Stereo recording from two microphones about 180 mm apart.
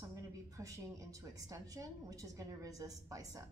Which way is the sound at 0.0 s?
15° right (ahead or behind).